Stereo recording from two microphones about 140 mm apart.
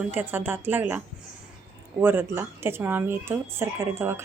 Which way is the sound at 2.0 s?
15° right (ahead or behind).